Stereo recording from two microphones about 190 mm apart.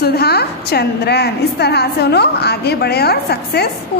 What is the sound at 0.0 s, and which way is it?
A woman's voice, 55° left (ahead or behind).